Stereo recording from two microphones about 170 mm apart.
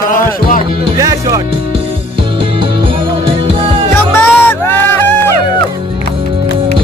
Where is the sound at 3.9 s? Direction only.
15° left (ahead or behind).